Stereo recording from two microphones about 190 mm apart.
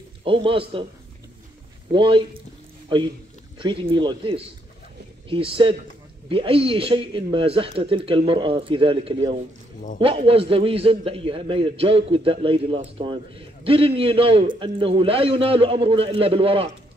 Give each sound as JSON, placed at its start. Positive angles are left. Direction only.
{"t": 0.2, "sound": "a man's voice", "side_deg": -25}
{"t": 1.9, "sound": "a man's voice", "side_deg": -25}
{"t": 3.5, "sound": "a man's voice", "side_deg": -30}